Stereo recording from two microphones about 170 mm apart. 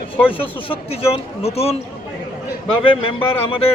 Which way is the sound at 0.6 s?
35° left (ahead or behind).